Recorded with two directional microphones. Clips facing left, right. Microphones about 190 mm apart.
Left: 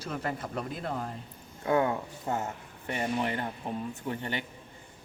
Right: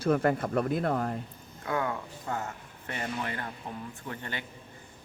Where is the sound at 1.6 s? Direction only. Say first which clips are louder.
Left 5 dB; 25° left (ahead or behind).